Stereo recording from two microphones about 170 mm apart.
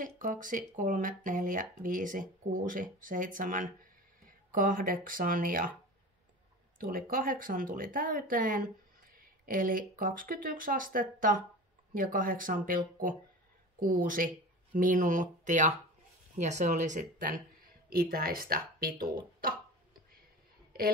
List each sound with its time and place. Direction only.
0.0 s speech: 50° right (ahead or behind)
6.8 s speech: 55° right (ahead or behind)